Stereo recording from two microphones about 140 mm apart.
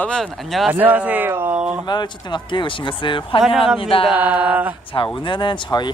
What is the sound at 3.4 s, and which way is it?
Speech, 5° right (ahead or behind).